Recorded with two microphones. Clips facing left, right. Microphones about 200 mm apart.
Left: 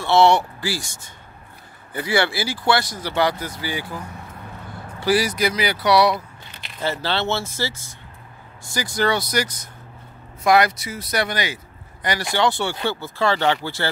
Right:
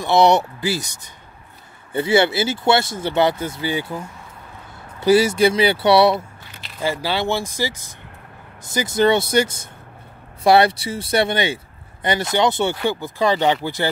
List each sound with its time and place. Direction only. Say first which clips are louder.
0.0 s speech: right 1 dB; 20° right (ahead or behind)
5.0 s speech: right 6 dB; 25° right (ahead or behind)
6.8 s speech: right 2 dB; 10° right (ahead or behind)